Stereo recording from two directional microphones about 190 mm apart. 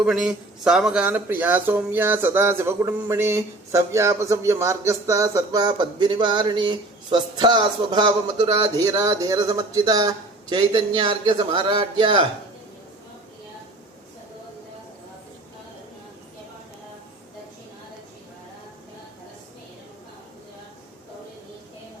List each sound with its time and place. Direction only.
0.0 s speech: 5° right (ahead or behind); by 12.2 s 25° right (ahead or behind)